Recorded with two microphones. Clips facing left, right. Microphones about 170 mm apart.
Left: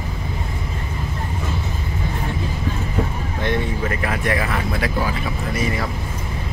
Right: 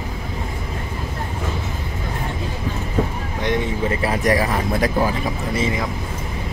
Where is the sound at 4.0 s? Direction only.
30° right (ahead or behind).